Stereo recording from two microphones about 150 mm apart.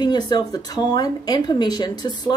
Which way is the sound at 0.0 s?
30° left (ahead or behind).